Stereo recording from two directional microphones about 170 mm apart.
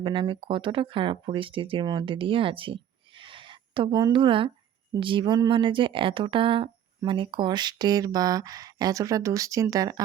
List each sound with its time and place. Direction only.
0.0 s speech: 30° right (ahead or behind)